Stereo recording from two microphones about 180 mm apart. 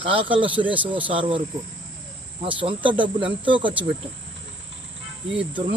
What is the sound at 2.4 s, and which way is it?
Cricket, 30° right (ahead or behind).